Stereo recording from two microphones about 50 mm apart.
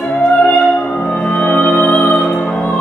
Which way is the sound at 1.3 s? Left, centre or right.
Left.